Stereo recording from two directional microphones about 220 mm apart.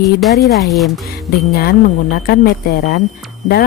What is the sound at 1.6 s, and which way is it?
Speech, 40° left (ahead or behind).